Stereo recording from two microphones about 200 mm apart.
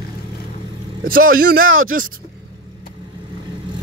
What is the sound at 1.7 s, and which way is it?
Speech, 90° right.